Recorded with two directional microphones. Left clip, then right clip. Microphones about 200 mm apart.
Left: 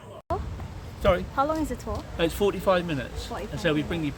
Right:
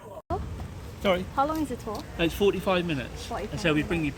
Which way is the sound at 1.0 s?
15° left (ahead or behind).